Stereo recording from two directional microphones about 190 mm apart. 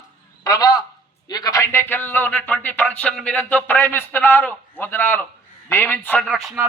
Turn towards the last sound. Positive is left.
turn(degrees=0)  # may be behind; listen again after turning